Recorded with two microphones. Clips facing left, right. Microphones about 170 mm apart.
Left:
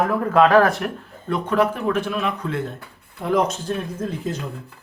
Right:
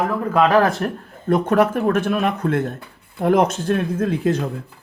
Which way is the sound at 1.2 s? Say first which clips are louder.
Right 4 dB; 45° right (ahead or behind).